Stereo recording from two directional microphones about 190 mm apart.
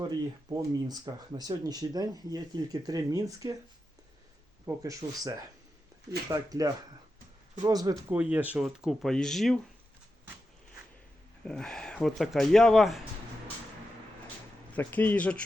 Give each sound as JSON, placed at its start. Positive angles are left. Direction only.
{"t": 0.5, "sound": "speech", "side_deg": -20}
{"t": 4.6, "sound": "speech", "side_deg": -15}
{"t": 8.1, "sound": "speech", "side_deg": -10}
{"t": 11.4, "sound": "speech", "side_deg": 5}
{"t": 14.7, "sound": "speech", "side_deg": 10}